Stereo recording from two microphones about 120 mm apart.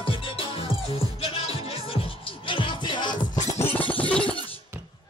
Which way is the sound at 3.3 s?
90° left.